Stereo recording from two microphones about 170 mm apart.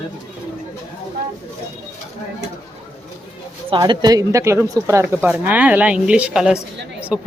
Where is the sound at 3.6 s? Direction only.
30° right (ahead or behind); by 7.3 s 5° right (ahead or behind).